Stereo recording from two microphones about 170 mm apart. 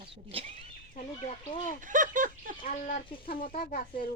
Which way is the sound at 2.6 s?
50° left (ahead or behind).